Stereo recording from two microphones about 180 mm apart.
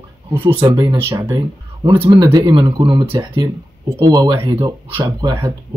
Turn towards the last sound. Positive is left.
turn(degrees=-25)  # may be behind; listen again after turning